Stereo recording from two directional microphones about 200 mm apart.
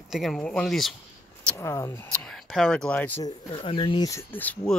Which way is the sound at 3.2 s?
25° left (ahead or behind).